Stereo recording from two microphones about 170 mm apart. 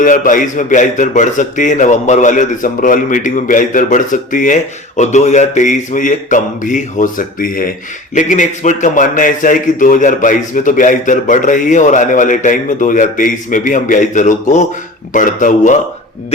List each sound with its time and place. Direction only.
0.0 s a man's voice: 50° left (ahead or behind)